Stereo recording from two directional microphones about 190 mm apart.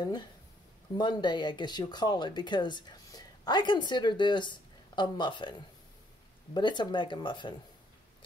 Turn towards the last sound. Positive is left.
turn(degrees=25)  # may be behind; listen again after turning